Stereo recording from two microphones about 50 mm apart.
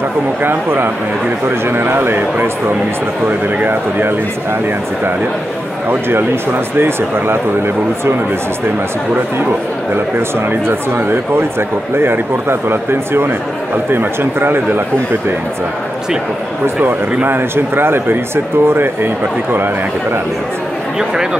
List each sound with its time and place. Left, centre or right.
0.4 s speech: right
5.9 s speech: right
10.1 s speech: right
17.2 s speech: right